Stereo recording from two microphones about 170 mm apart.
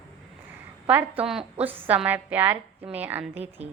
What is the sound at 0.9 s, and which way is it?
A woman's voice, 10° right (ahead or behind).